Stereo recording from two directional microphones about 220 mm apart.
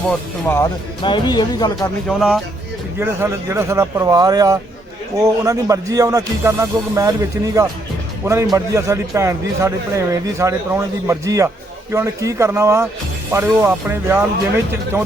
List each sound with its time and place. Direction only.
0.1 s speech: 10° left (ahead or behind)
2.0 s speech: centre (ahead or behind)
3.0 s a man's voice: 10° right (ahead or behind)